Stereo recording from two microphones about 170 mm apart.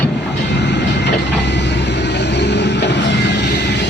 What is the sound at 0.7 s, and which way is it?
Vehicle, 90° left.